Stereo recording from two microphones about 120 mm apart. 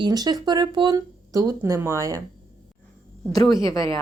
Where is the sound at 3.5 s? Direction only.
30° left (ahead or behind).